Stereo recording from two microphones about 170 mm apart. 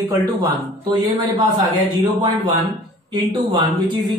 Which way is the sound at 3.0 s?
25° right (ahead or behind).